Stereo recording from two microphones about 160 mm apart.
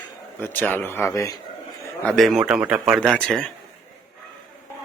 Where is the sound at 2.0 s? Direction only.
Centre (ahead or behind).